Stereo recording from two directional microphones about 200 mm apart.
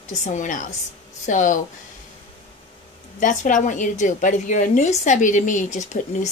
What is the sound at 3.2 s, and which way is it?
Speech, 40° left (ahead or behind).